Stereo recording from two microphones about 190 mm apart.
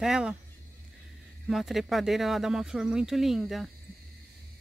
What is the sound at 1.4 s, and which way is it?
Speech, centre (ahead or behind).